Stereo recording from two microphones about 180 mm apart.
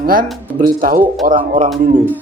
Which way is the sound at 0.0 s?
50° right (ahead or behind).